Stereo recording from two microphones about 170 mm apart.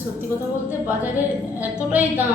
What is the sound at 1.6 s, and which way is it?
Speech, 10° right (ahead or behind).